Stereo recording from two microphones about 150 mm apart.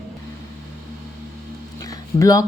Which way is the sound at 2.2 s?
25° left (ahead or behind).